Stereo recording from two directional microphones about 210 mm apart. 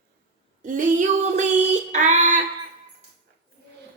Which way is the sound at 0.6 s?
35° right (ahead or behind).